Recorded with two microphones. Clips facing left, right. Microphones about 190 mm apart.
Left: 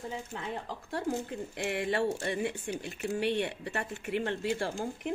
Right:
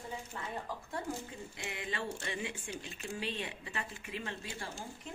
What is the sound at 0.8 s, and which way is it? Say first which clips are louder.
Speech: left 7 dB; 75° left (ahead or behind).